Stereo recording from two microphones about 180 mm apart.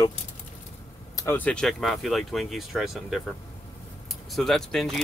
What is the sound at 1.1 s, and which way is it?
Speech, 15° left (ahead or behind).